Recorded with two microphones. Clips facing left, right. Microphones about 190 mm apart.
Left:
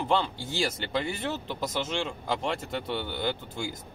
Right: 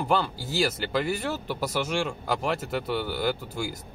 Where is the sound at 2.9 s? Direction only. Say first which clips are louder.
Right 4 dB; 5° right (ahead or behind).